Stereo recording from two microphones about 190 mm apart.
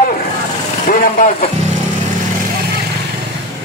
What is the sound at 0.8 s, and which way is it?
Speech, 45° left (ahead or behind).